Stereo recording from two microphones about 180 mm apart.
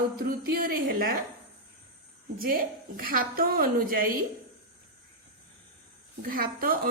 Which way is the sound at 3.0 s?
50° right (ahead or behind).